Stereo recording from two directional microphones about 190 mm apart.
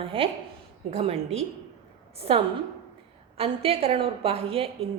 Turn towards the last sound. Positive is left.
turn(degrees=-30)  # may be behind; listen again after turning